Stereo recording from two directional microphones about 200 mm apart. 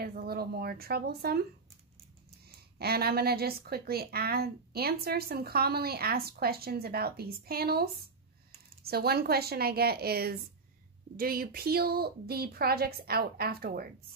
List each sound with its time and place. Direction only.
0.0 s a woman's voice: 50° right (ahead or behind)
2.8 s a woman's voice: 50° right (ahead or behind)